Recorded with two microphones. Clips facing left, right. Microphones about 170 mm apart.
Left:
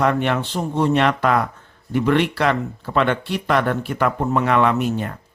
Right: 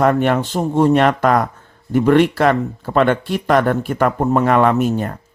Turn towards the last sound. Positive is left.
turn(degrees=-45)  # may be behind; listen again after turning